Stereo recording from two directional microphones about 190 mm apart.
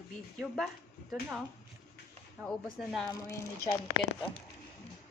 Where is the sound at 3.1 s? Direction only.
20° left (ahead or behind).